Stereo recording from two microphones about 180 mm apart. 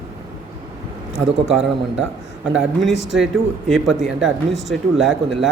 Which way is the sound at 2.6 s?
Centre (ahead or behind).